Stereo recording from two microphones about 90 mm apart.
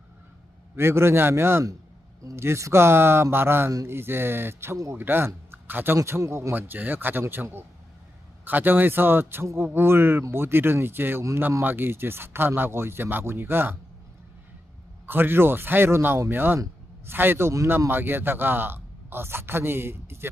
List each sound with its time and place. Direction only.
0.8 s a man's voice: 30° right (ahead or behind)
15.0 s a man's voice: 25° right (ahead or behind)